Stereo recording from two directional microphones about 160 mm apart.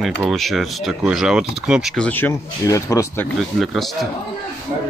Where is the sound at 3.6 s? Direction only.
Centre (ahead or behind).